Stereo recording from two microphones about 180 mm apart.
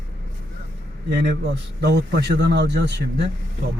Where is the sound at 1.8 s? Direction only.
65° right (ahead or behind).